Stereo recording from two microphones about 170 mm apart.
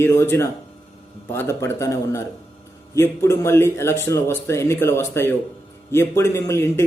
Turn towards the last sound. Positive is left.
turn(degrees=15)  # may be behind; listen again after turning